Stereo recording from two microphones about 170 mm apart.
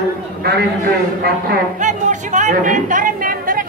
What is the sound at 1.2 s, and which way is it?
Speech, 60° right (ahead or behind).